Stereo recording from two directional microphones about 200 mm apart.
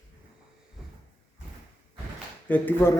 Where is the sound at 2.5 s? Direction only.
10° left (ahead or behind).